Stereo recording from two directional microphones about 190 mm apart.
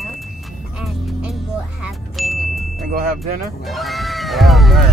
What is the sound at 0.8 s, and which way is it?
Speech, centre (ahead or behind).